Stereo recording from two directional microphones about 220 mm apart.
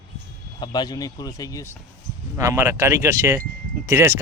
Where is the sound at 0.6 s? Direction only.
20° left (ahead or behind).